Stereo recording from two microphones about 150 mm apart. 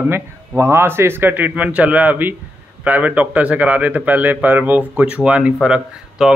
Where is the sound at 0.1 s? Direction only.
15° right (ahead or behind).